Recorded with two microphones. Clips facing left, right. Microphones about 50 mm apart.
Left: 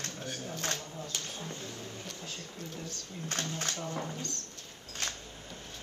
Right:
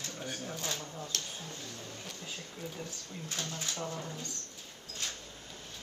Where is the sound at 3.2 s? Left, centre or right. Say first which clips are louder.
Left 4 dB; left.